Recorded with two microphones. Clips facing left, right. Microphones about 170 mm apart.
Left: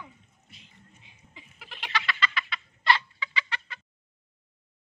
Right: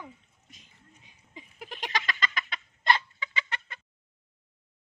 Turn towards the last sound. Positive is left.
turn(degrees=-50)  # may be behind; listen again after turning